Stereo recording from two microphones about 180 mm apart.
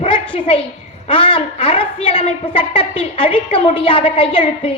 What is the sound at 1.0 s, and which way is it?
A woman's voice, 30° left (ahead or behind).